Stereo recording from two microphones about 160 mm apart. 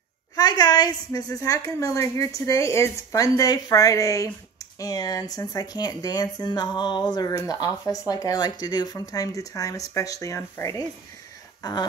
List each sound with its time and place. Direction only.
0.4 s speech: 25° left (ahead or behind)